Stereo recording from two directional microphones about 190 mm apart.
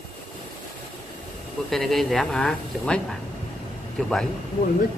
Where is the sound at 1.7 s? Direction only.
Centre (ahead or behind).